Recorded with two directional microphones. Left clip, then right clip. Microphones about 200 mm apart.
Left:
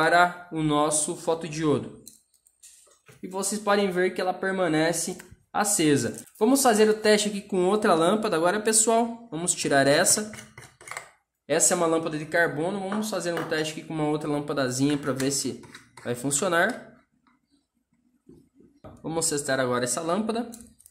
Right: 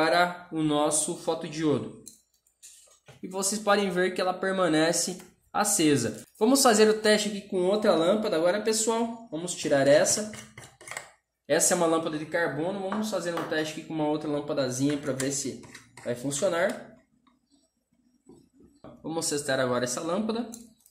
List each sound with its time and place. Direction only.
0.1 s speech: 10° left (ahead or behind)
3.2 s speech: 5° left (ahead or behind)
7.5 s speech: 30° left (ahead or behind)
11.4 s speech: 10° left (ahead or behind)
12.3 s speech: 25° left (ahead or behind)
19.0 s speech: 15° left (ahead or behind)